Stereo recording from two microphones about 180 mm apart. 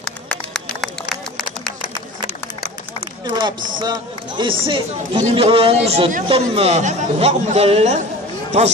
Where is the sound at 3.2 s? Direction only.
25° right (ahead or behind).